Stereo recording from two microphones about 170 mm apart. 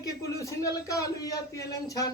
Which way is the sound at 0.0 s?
20° left (ahead or behind).